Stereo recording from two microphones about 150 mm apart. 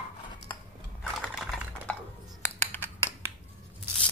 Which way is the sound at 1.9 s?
10° left (ahead or behind).